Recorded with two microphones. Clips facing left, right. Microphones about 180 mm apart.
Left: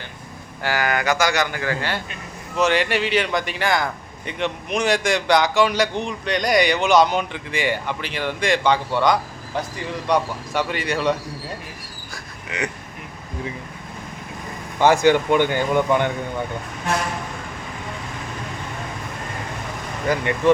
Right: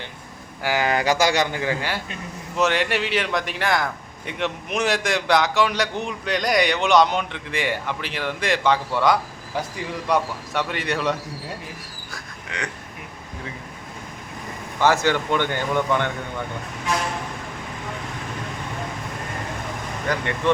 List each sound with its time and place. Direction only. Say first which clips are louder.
0.6 s speech: even; 15° right (ahead or behind)
0.9 s a man's voice: right 1 dB; 30° right (ahead or behind)
2.6 s a man's voice: left 2 dB; centre (ahead or behind)
12.1 s a sound: left 3 dB; 5° left (ahead or behind)
14.8 s speech: left 4 dB; 15° left (ahead or behind)
20.1 s speech: left 4 dB; 10° left (ahead or behind)